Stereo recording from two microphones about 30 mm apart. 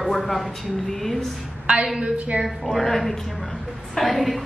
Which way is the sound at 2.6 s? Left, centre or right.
Centre.